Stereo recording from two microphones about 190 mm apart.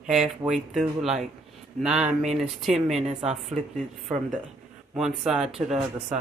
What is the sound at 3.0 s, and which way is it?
Speech, 35° right (ahead or behind).